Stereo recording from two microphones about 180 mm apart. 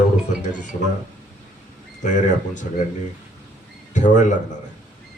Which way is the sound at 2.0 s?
45° left (ahead or behind).